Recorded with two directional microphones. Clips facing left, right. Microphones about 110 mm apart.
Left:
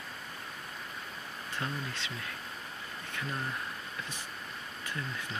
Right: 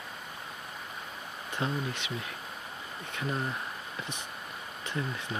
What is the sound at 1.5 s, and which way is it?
Speech, 20° right (ahead or behind).